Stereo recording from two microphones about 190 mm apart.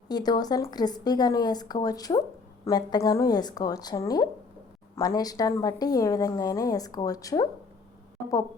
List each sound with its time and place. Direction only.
0.1 s a woman's voice: 20° left (ahead or behind)